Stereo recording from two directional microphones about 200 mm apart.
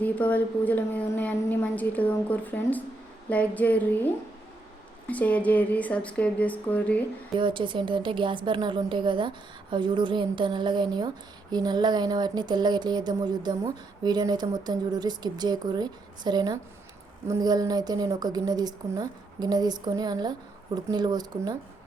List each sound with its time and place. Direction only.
0.0 s a woman's voice: 10° left (ahead or behind)
7.3 s speech: 25° right (ahead or behind)